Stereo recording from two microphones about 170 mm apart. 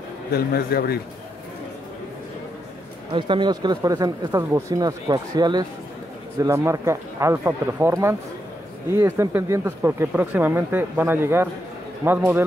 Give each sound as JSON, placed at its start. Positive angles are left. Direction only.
{"t": 0.3, "sound": "speech", "side_deg": 65}
{"t": 3.1, "sound": "speech", "side_deg": -30}